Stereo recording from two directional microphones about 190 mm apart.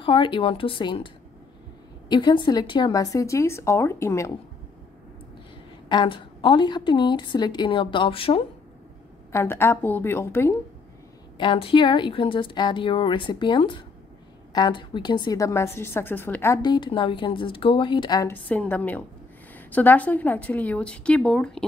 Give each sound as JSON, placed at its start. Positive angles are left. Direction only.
{"t": 0.0, "sound": "a woman's voice", "side_deg": 25}
{"t": 5.9, "sound": "a woman's voice", "side_deg": 25}
{"t": 9.3, "sound": "a woman's voice", "side_deg": 15}
{"t": 11.3, "sound": "a woman's voice", "side_deg": 25}
{"t": 16.7, "sound": "a woman's voice", "side_deg": 25}
{"t": 18.5, "sound": "a woman's voice", "side_deg": 10}